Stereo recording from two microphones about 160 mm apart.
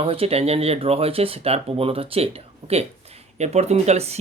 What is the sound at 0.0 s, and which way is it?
Speech, 35° right (ahead or behind).